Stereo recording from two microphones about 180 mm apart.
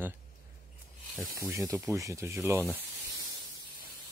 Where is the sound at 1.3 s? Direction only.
15° right (ahead or behind).